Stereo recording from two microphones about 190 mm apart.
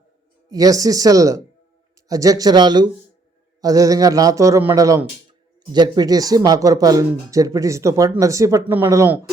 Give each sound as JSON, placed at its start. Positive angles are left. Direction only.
{"t": 0.5, "sound": "speech", "side_deg": -20}